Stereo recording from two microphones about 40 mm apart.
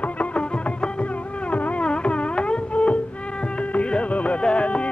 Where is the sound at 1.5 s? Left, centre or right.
Left.